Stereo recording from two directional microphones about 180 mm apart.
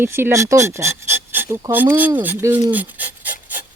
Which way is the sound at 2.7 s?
10° right (ahead or behind).